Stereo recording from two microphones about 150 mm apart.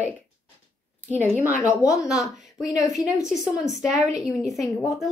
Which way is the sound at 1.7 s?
20° left (ahead or behind).